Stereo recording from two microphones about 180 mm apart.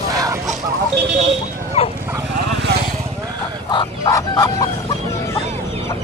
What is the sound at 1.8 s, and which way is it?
Dog, 35° left (ahead or behind).